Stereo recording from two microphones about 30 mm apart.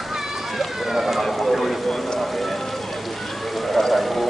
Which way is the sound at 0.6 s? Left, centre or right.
Centre.